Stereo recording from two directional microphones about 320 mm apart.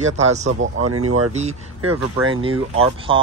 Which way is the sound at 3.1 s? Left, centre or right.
Centre.